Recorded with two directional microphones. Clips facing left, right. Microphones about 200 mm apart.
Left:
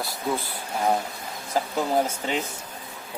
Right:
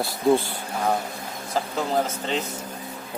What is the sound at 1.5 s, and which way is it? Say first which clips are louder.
Speech: left 1 dB; 10° left (ahead or behind).